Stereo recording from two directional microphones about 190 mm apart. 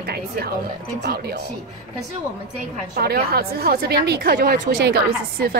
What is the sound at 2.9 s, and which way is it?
A woman's voice, 55° right (ahead or behind).